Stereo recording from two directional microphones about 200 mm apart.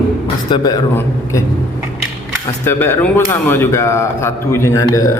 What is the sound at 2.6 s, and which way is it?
A man's voice, 10° left (ahead or behind).